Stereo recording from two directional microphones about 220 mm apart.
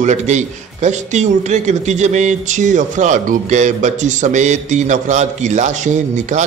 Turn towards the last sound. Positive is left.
turn(degrees=-35)  # may be behind; listen again after turning